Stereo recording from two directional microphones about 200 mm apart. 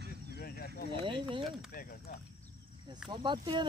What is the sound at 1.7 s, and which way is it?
Speech, 45° left (ahead or behind).